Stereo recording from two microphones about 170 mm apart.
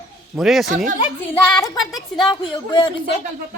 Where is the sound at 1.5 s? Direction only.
20° left (ahead or behind).